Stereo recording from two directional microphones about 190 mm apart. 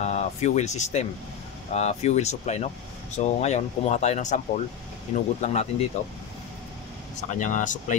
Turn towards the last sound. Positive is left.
turn(degrees=40)  # may be behind; listen again after turning